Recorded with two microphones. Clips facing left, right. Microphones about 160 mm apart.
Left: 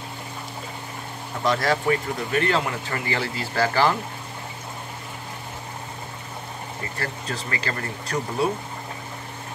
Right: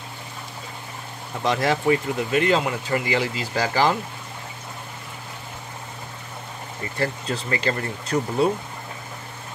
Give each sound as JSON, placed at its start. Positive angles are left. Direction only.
{"t": 1.4, "sound": "speech", "side_deg": -20}
{"t": 7.0, "sound": "speech", "side_deg": -25}